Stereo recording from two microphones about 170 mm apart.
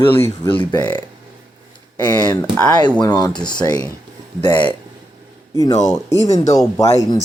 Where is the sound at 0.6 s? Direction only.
25° left (ahead or behind).